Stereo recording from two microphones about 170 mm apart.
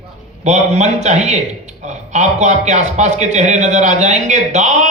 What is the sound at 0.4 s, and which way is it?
A man's voice, 40° right (ahead or behind).